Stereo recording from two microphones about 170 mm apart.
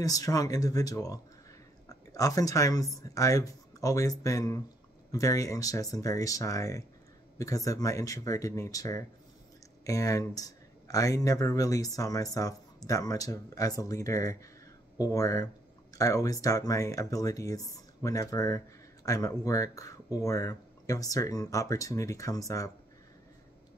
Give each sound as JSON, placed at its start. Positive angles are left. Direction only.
{"t": 0.0, "sound": "speech", "side_deg": 20}